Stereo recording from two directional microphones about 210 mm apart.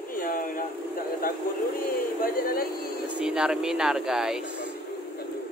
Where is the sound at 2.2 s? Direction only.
45° left (ahead or behind).